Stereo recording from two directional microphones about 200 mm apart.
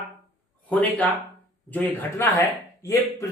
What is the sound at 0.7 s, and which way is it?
Speech, 10° left (ahead or behind).